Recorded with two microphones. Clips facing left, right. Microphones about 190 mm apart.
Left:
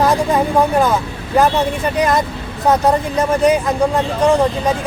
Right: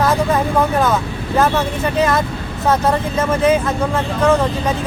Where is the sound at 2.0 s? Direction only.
15° left (ahead or behind).